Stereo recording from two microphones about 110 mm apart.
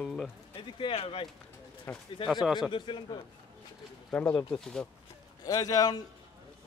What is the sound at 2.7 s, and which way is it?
Speech, 45° left (ahead or behind).